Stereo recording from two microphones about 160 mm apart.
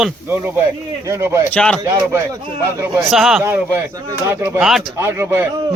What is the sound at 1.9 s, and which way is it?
Speech, 15° right (ahead or behind).